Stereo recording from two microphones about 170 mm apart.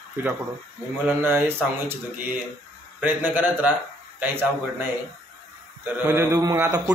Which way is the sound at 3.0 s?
10° right (ahead or behind).